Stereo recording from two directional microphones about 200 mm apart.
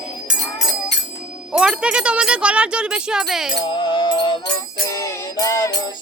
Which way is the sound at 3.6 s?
25° left (ahead or behind).